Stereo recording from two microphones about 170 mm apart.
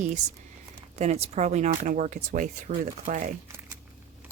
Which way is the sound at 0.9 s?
40° right (ahead or behind).